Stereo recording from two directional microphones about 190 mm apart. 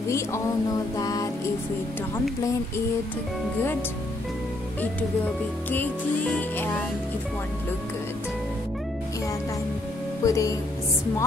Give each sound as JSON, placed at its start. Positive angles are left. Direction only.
{"t": 0.9, "sound": "music", "side_deg": 20}
{"t": 5.7, "sound": "music", "side_deg": 5}
{"t": 10.2, "sound": "music", "side_deg": 15}